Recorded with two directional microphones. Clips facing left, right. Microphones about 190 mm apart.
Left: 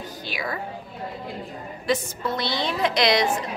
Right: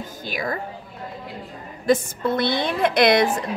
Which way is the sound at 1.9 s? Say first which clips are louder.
Right 5 dB; 55° right (ahead or behind).